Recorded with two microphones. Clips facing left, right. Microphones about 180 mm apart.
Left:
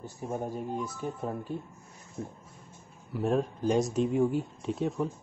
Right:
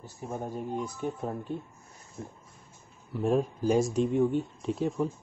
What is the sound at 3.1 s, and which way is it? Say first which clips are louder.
Speech: right 1 dB; centre (ahead or behind).